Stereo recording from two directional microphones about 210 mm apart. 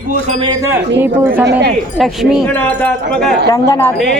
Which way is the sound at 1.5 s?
55° right (ahead or behind).